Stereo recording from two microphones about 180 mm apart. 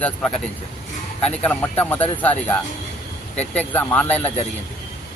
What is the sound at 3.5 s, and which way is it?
Speech, 10° left (ahead or behind).